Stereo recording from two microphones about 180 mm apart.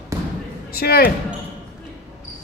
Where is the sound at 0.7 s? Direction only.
55° left (ahead or behind).